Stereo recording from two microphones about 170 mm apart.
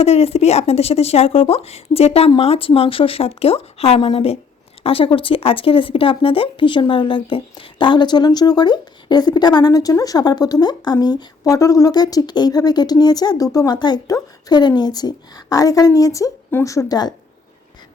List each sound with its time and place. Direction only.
0.0 s speech: 35° left (ahead or behind)